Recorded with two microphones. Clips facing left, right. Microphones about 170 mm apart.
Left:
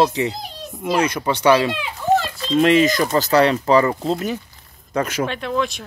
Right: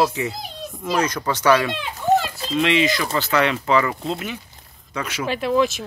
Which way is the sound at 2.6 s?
45° left (ahead or behind).